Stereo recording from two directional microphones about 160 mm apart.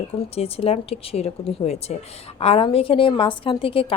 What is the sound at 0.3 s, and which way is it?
A woman's voice, 40° left (ahead or behind).